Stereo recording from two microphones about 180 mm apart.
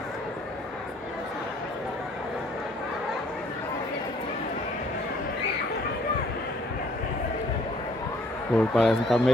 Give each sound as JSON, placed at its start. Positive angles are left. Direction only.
{"t": 8.5, "sound": "speech", "side_deg": 0}